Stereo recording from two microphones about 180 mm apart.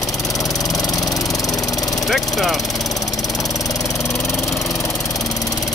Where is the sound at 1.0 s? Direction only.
20° left (ahead or behind).